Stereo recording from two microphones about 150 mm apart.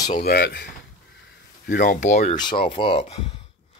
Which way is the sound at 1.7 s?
70° left (ahead or behind).